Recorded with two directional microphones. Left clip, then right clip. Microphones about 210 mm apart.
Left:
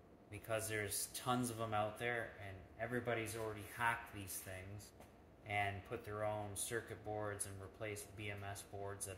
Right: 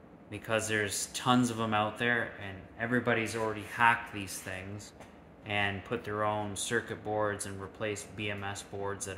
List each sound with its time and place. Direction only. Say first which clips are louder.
0.5 s speech: right 11 dB; 5° right (ahead or behind)
5.5 s speech: right 9 dB; 5° right (ahead or behind)